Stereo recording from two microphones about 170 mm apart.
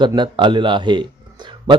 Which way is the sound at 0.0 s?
25° right (ahead or behind).